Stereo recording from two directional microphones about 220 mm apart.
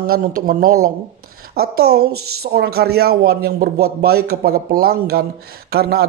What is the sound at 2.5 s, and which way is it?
Speech, 45° right (ahead or behind).